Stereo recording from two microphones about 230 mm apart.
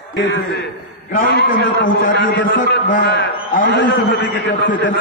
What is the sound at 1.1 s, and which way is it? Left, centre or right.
A man's voice, left.